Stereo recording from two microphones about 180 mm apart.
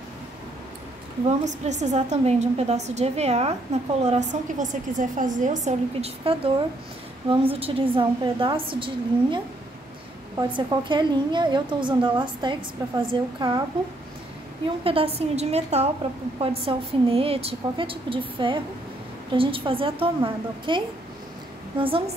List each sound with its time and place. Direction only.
1.4 s a woman's voice: 40° right (ahead or behind); by 13.6 s 25° right (ahead or behind)
14.8 s a woman's voice: 30° right (ahead or behind)